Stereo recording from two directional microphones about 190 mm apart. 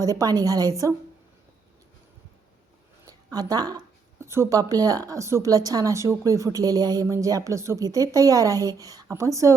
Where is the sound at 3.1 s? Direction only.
20° right (ahead or behind).